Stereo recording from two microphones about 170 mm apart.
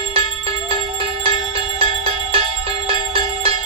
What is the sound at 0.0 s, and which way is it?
Music, 35° right (ahead or behind).